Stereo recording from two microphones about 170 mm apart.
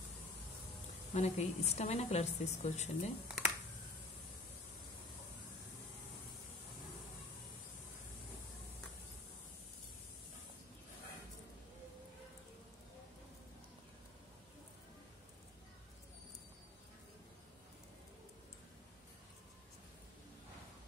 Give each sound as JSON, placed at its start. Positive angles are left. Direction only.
{"t": 1.1, "sound": "a woman's voice", "side_deg": 40}
{"t": 3.3, "sound": "computer keyboard", "side_deg": -5}